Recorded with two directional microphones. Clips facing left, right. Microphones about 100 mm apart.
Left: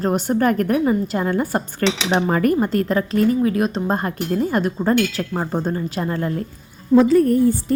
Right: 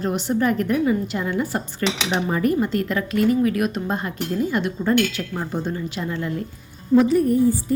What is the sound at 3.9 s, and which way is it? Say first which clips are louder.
Speech: left 3 dB; 50° left (ahead or behind).